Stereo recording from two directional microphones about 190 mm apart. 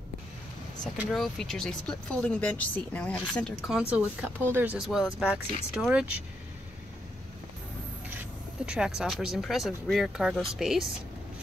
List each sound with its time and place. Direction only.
0.9 s speech: centre (ahead or behind)
8.6 s speech: 5° right (ahead or behind)